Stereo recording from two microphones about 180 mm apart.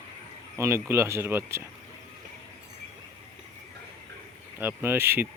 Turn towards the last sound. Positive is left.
turn(degrees=-10)  # may be behind; listen again after turning